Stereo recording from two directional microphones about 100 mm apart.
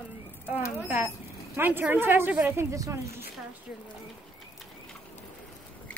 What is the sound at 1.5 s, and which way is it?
A woman's voice, 20° right (ahead or behind).